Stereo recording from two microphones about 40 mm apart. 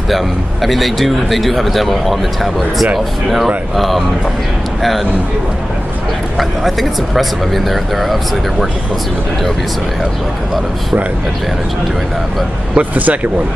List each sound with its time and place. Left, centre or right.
0.1 s a man's voice: centre
6.3 s a man's voice: centre
12.7 s speech: right